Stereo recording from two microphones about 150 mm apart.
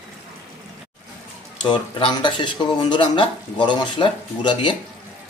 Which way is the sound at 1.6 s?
35° left (ahead or behind).